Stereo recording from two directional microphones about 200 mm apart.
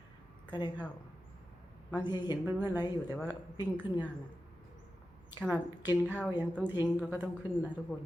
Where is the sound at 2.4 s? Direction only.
10° right (ahead or behind).